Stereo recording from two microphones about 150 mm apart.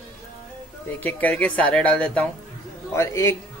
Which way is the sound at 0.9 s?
10° left (ahead or behind).